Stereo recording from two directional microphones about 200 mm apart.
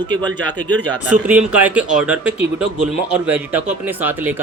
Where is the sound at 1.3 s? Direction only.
10° right (ahead or behind).